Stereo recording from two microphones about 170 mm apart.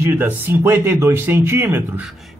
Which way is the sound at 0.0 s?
10° right (ahead or behind).